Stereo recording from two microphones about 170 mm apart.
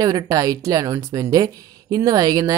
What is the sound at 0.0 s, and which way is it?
Speech, 20° right (ahead or behind).